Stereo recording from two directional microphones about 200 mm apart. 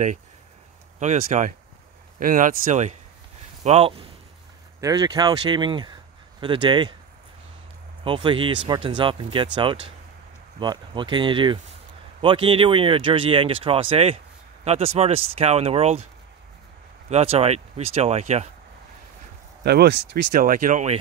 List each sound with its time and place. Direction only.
0.9 s speech: 35° right (ahead or behind); by 7.0 s 20° right (ahead or behind)
8.0 s speech: 25° right (ahead or behind)
17.1 s speech: 30° right (ahead or behind)
19.6 s speech: 55° right (ahead or behind); by 21.0 s 35° right (ahead or behind)